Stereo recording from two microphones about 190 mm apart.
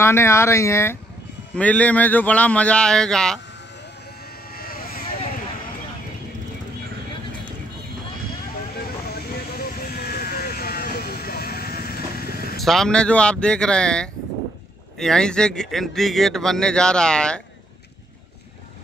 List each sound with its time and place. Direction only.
0.0 s a man's voice: 15° left (ahead or behind)
4.5 s sheep: 50° left (ahead or behind)
9.6 s sheep: 55° left (ahead or behind)
12.5 s speech: centre (ahead or behind)